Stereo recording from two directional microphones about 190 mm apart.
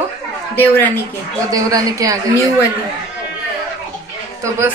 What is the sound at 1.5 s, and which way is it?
Speech, 20° right (ahead or behind).